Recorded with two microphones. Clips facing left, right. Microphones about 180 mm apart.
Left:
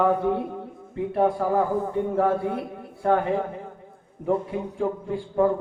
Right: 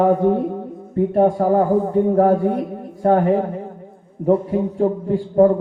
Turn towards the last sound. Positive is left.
turn(degrees=-40)  # may be behind; listen again after turning